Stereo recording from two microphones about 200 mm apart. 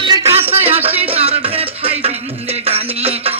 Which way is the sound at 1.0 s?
30° right (ahead or behind).